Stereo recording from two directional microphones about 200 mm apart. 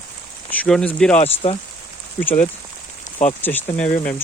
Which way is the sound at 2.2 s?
10° left (ahead or behind).